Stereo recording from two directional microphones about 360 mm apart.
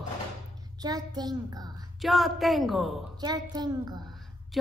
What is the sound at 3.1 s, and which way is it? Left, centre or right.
Speech, centre.